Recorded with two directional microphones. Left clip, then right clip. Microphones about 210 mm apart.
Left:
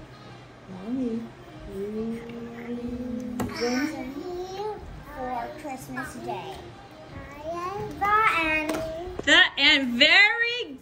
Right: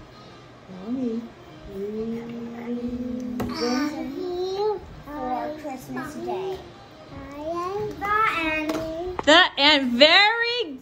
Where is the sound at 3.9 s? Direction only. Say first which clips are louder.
Right 5 dB; centre (ahead or behind).